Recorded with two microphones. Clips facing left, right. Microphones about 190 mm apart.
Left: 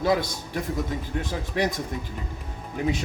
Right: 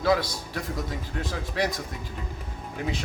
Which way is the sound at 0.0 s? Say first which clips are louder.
Even; 20° left (ahead or behind).